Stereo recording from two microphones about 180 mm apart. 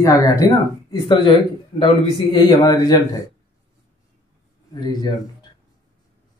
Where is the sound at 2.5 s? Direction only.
20° left (ahead or behind).